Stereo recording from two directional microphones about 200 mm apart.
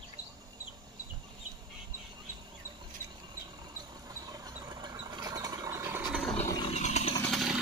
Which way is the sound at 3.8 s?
15° right (ahead or behind).